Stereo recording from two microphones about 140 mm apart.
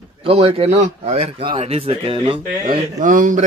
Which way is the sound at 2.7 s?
70° right (ahead or behind).